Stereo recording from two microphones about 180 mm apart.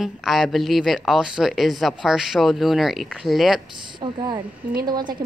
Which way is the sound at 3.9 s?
25° right (ahead or behind).